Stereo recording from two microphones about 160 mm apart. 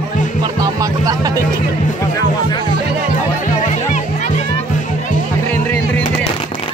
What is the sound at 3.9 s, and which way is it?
Music, 50° left (ahead or behind).